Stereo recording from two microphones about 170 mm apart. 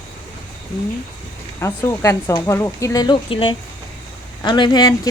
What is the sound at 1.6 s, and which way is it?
Speech, 15° left (ahead or behind).